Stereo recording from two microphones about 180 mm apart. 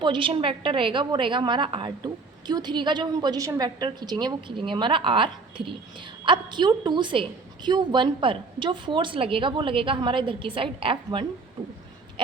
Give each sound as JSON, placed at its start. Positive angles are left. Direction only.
{"t": 0.0, "sound": "a woman's voice", "side_deg": -25}